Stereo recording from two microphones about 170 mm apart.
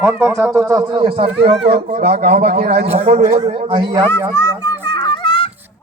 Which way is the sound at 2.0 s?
70° right (ahead or behind).